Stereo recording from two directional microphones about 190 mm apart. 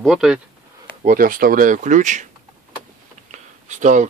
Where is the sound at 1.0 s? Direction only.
50° right (ahead or behind).